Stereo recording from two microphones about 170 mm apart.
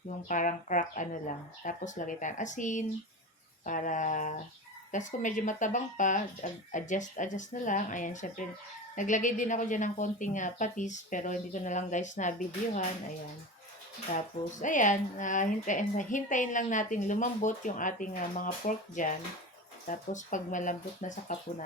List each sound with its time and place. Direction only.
0.3 s speech: 50° left (ahead or behind)
14.6 s speech: 50° left (ahead or behind)